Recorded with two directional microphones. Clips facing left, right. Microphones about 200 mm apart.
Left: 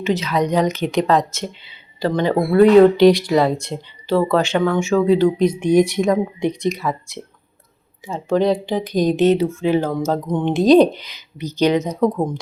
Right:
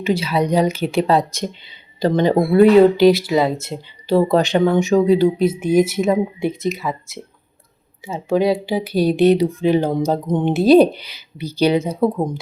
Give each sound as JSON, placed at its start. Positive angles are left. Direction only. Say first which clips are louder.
{"t": 0.0, "sound": "speech", "louder": "right 1 dB", "side_deg": -10}
{"t": 2.7, "sound": "speech", "louder": "left 1 dB", "side_deg": -5}
{"t": 4.1, "sound": "speech", "louder": "right 2 dB", "side_deg": -15}